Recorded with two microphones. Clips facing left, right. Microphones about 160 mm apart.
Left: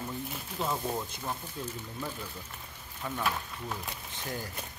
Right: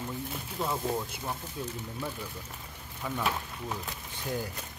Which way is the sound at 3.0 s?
10° right (ahead or behind).